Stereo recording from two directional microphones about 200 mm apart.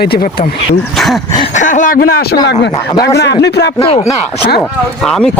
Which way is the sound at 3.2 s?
60° left (ahead or behind).